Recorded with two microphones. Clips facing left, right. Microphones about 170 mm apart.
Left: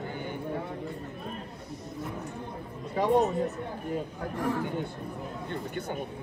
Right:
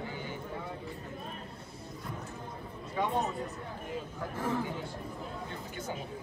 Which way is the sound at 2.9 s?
35° left (ahead or behind).